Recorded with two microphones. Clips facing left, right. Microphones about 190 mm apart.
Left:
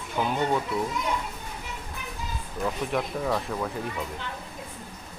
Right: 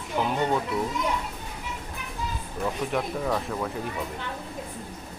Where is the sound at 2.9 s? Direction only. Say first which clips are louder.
Even; centre (ahead or behind).